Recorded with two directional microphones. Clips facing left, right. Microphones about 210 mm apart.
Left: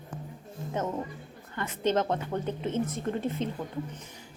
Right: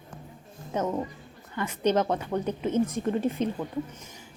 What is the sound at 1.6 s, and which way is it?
A woman's voice, 15° right (ahead or behind).